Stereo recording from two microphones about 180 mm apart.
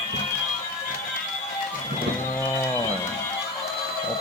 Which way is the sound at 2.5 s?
15° left (ahead or behind).